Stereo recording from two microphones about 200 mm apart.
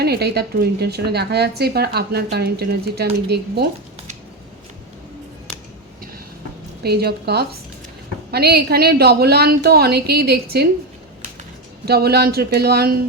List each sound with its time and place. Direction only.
0.0 s a woman's voice: 55° right (ahead or behind)
6.8 s a woman's voice: 55° right (ahead or behind)
11.9 s a woman's voice: 50° right (ahead or behind)